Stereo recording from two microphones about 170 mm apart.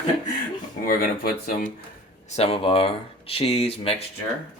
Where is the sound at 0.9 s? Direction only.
60° left (ahead or behind).